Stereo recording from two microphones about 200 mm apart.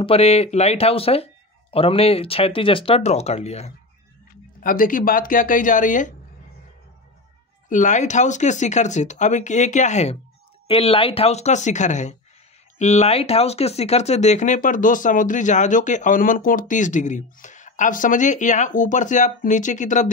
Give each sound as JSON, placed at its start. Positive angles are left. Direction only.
{"t": 0.0, "sound": "speech", "side_deg": 30}
{"t": 4.3, "sound": "speech", "side_deg": 45}
{"t": 7.7, "sound": "speech", "side_deg": 35}